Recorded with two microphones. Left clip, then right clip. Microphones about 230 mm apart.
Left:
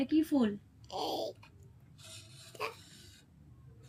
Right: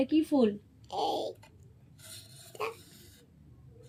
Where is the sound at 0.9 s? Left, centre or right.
Centre.